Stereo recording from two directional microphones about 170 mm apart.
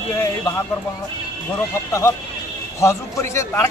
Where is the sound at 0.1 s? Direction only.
15° left (ahead or behind).